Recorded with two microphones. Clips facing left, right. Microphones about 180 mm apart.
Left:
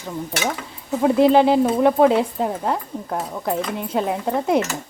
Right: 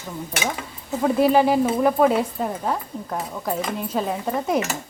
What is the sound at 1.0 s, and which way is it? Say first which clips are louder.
Cutlery: left 3 dB; 20° left (ahead or behind).